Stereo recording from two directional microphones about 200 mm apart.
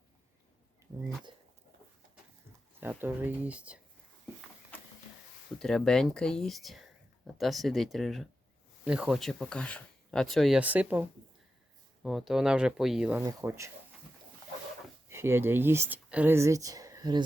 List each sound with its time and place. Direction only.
2.8 s speech: 10° right (ahead or behind)
5.5 s speech: 5° left (ahead or behind)
12.0 s speech: centre (ahead or behind)
15.1 s speech: 10° right (ahead or behind)